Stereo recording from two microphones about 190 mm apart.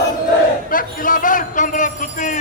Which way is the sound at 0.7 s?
45° left (ahead or behind).